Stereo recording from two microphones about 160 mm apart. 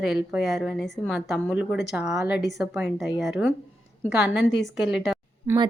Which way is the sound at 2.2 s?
90° left.